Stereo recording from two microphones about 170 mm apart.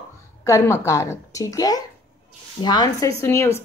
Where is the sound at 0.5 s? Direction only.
15° left (ahead or behind).